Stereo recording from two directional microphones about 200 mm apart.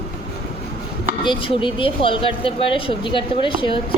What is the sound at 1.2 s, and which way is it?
Speech, 25° left (ahead or behind).